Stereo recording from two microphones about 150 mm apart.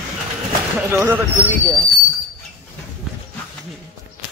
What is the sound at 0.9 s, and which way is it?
Speech, 15° right (ahead or behind).